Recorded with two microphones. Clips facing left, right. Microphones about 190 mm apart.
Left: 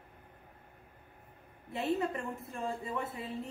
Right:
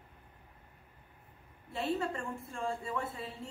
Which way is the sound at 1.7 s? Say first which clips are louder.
Left 2 dB; 15° left (ahead or behind).